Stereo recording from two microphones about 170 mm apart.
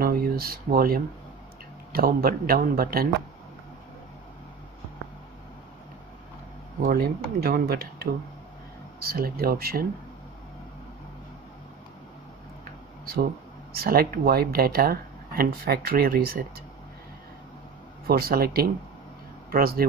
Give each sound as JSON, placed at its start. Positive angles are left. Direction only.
{"t": 0.0, "sound": "speech", "side_deg": -60}
{"t": 6.9, "sound": "speech", "side_deg": -60}
{"t": 13.7, "sound": "speech", "side_deg": -60}
{"t": 18.0, "sound": "speech", "side_deg": -65}